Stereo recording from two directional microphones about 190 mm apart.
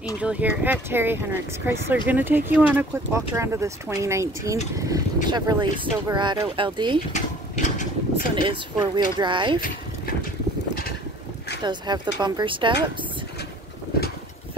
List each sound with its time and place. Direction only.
0.2 s speech: 5° right (ahead or behind); by 7.0 s 25° right (ahead or behind)
7.2 s speech: 40° left (ahead or behind)
8.4 s speech: 25° right (ahead or behind)
11.6 s speech: 25° right (ahead or behind)